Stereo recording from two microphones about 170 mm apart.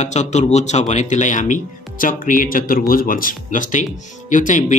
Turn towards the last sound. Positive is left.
turn(degrees=50)  # may be behind; listen again after turning